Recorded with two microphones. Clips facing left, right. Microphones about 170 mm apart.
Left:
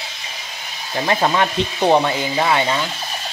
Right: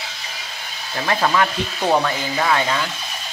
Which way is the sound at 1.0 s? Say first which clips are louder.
Left 1 dB; 25° left (ahead or behind).